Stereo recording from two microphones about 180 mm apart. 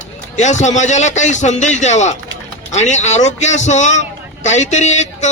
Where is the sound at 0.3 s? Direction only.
40° left (ahead or behind).